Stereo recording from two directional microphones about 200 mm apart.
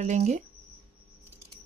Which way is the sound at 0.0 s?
35° right (ahead or behind).